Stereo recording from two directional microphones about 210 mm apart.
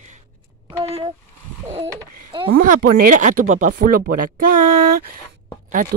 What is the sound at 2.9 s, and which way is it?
Speech, 40° right (ahead or behind).